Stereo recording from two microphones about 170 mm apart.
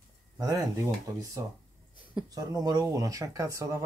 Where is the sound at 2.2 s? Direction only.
20° right (ahead or behind).